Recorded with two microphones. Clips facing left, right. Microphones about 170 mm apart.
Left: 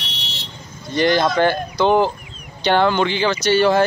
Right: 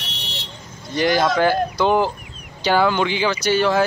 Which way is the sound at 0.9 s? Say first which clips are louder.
Left 1 dB; 5° right (ahead or behind).